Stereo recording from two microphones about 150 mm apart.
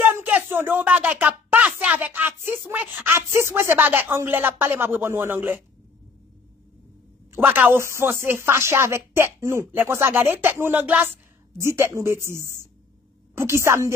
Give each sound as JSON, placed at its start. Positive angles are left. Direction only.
{"t": 0.0, "sound": "speech", "side_deg": -10}
{"t": 7.3, "sound": "a woman's voice", "side_deg": -10}